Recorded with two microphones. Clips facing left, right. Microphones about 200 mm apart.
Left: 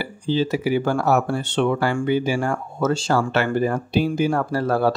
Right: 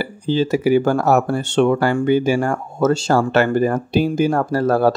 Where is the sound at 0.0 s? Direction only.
45° right (ahead or behind).